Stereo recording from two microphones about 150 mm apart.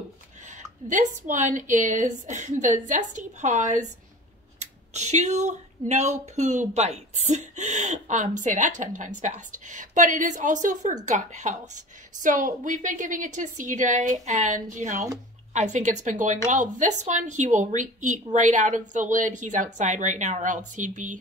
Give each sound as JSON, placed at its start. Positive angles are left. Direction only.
{"t": 0.5, "sound": "a woman's voice", "side_deg": -55}